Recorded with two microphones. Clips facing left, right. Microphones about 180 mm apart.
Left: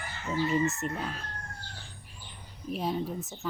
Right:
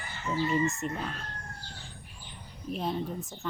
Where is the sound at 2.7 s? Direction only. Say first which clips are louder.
Left 1 dB; 5° left (ahead or behind).